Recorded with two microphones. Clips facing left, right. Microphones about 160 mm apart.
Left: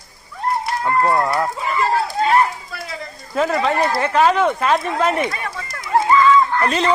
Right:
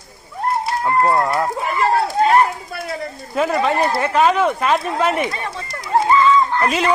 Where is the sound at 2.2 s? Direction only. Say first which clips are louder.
Even; 50° right (ahead or behind).